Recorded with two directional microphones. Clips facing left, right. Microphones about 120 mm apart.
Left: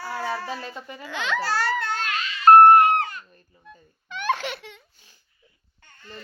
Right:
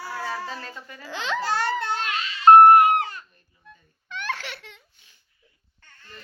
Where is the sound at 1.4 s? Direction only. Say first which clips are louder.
Even; 20° right (ahead or behind).